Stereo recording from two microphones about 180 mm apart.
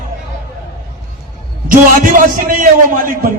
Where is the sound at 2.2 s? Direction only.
50° right (ahead or behind).